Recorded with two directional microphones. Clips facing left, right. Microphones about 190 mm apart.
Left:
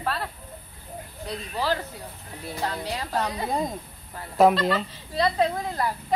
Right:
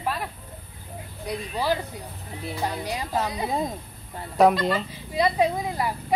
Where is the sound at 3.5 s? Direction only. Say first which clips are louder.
Even; centre (ahead or behind).